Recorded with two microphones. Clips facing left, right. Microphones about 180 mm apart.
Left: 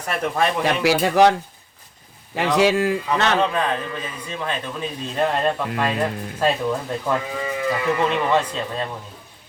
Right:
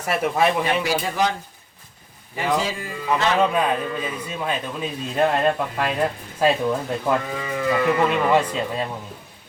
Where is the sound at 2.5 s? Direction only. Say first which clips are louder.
Left 12 dB; 75° left (ahead or behind).